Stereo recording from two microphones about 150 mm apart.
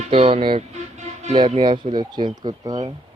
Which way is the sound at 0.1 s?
40° right (ahead or behind).